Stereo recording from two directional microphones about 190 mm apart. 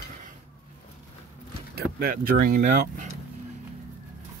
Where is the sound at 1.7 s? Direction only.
50° right (ahead or behind).